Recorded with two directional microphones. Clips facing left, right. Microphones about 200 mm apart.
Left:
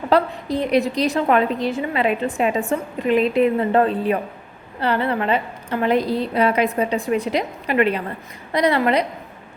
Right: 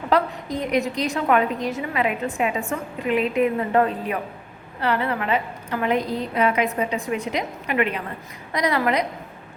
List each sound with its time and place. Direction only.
0.1 s a woman's voice: 30° left (ahead or behind)